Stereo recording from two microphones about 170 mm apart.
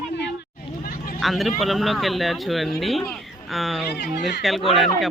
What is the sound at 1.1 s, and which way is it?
Speech, centre (ahead or behind).